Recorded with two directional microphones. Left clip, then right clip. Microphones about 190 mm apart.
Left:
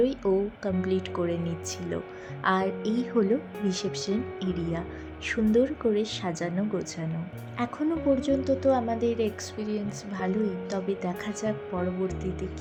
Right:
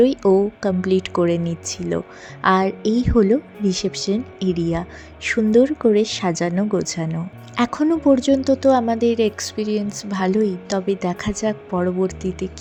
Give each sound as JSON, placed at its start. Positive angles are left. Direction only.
{"t": 0.0, "sound": "a woman's voice", "side_deg": -40}